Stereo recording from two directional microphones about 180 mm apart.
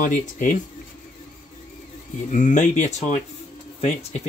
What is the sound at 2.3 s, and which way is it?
Speech, 45° left (ahead or behind).